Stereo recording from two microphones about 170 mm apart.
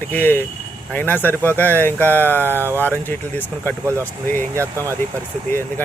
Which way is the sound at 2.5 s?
15° right (ahead or behind).